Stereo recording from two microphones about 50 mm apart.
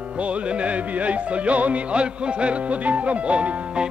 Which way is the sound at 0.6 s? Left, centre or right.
Right.